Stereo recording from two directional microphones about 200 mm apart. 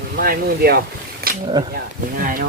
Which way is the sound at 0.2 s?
50° right (ahead or behind).